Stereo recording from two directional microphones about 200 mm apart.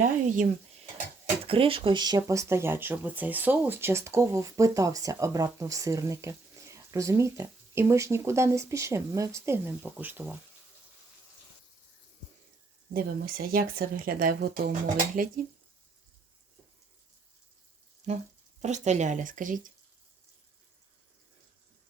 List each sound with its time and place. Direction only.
0.0 s speech: 40° right (ahead or behind)
1.5 s speech: 25° right (ahead or behind); by 10.4 s 10° right (ahead or behind)
12.9 s speech: 50° right (ahead or behind)
18.0 s frying: 35° right (ahead or behind)
18.6 s speech: 35° right (ahead or behind)